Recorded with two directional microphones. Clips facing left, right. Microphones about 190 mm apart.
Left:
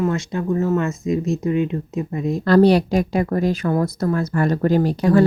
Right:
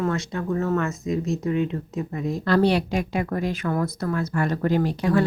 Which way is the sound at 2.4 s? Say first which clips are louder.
Left 7 dB; 40° left (ahead or behind).